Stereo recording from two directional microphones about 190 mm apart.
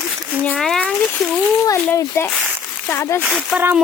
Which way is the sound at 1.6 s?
15° left (ahead or behind).